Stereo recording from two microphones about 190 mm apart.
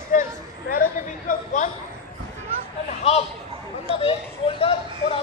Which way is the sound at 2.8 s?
35° left (ahead or behind).